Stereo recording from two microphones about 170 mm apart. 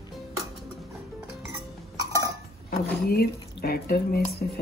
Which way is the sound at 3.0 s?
65° left (ahead or behind).